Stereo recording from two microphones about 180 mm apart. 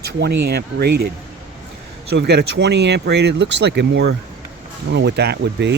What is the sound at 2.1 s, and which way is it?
Speech, 70° right (ahead or behind).